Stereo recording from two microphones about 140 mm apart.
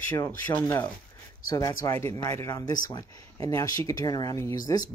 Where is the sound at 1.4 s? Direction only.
25° left (ahead or behind).